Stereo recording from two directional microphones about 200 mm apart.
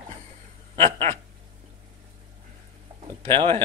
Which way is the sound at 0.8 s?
25° right (ahead or behind).